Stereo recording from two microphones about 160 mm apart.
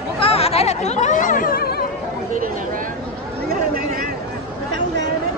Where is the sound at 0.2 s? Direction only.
40° left (ahead or behind); by 1.8 s 70° left (ahead or behind).